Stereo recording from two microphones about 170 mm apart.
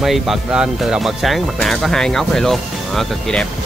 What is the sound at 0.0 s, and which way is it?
Speech, centre (ahead or behind).